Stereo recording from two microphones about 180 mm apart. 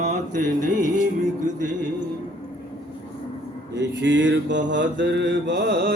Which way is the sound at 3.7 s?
80° right.